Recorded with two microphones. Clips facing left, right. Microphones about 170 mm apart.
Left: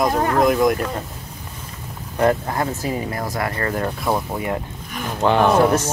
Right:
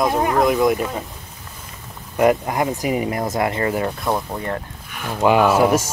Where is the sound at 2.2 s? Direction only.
15° right (ahead or behind).